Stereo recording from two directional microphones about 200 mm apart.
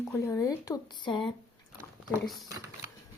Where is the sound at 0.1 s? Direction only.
15° left (ahead or behind).